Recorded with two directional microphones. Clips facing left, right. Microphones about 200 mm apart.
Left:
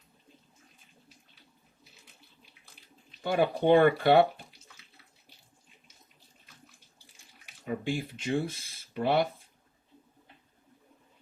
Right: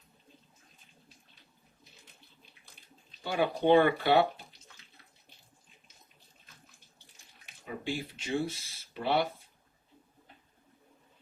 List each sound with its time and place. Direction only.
3.2 s speech: 50° left (ahead or behind)
7.6 s speech: 50° left (ahead or behind)